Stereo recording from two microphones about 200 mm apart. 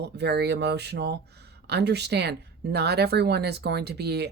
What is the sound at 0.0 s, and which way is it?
Speech, 55° right (ahead or behind).